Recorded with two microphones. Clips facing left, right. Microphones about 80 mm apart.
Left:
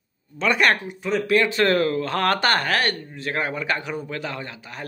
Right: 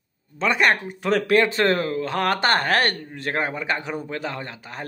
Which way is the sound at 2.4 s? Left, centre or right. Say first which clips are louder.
Right 1 dB; right.